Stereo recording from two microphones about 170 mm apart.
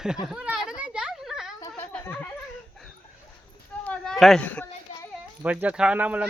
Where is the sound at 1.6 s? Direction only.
10° left (ahead or behind).